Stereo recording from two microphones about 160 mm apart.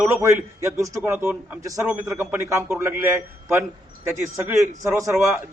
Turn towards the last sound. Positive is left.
turn(degrees=-20)  # may be behind; listen again after turning